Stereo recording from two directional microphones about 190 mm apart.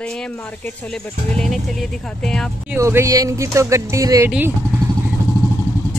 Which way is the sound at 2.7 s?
15° right (ahead or behind).